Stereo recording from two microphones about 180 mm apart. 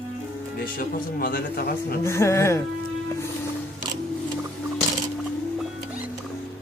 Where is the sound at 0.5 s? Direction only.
55° left (ahead or behind).